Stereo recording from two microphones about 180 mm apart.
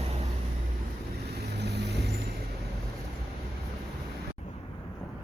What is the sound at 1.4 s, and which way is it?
Vehicle, 65° right (ahead or behind).